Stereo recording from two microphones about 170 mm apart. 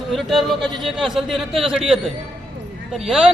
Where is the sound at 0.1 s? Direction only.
Centre (ahead or behind).